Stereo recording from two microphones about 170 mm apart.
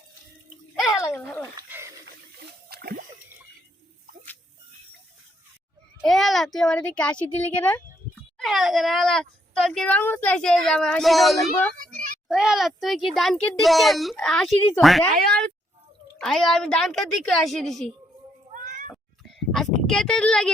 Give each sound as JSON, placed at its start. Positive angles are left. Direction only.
{"t": 0.9, "sound": "a sound", "side_deg": 20}
{"t": 1.2, "sound": "speech", "side_deg": 10}
{"t": 1.5, "sound": "dog", "side_deg": -15}
{"t": 2.0, "sound": "a sound", "side_deg": -70}
{"t": 6.1, "sound": "a child's voice", "side_deg": 0}
{"t": 16.1, "sound": "speech", "side_deg": 0}
{"t": 18.5, "sound": "meow", "side_deg": -50}
{"t": 19.5, "sound": "speech", "side_deg": 0}